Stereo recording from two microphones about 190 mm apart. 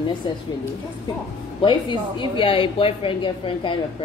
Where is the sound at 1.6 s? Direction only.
25° left (ahead or behind).